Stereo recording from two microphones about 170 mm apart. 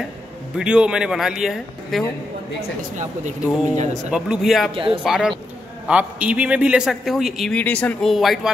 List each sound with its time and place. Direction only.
0.6 s a man's voice: 5° right (ahead or behind)
3.0 s speech: 45° right (ahead or behind)
4.1 s a man's voice: 5° right (ahead or behind)
4.7 s speech: 30° right (ahead or behind)
5.0 s a man's voice: centre (ahead or behind)